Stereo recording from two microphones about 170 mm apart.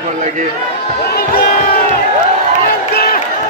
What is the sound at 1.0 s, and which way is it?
Crowd, 70° left (ahead or behind).